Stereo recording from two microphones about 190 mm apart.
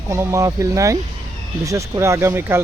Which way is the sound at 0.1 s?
15° right (ahead or behind).